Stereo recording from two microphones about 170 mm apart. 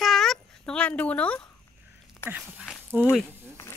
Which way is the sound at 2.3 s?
10° right (ahead or behind).